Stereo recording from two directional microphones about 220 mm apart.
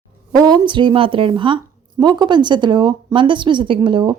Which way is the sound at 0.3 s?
20° right (ahead or behind).